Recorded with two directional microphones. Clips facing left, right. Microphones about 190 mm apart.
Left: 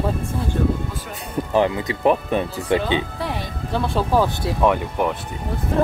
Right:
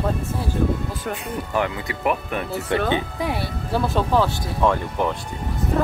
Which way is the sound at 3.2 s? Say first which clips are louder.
Right 2 dB; 10° right (ahead or behind).